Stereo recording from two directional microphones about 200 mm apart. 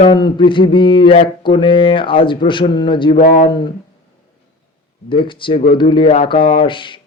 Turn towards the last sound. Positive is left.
turn(degrees=25)  # may be behind; listen again after turning